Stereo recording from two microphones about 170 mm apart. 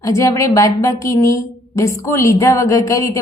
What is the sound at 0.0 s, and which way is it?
A woman's voice, 20° left (ahead or behind).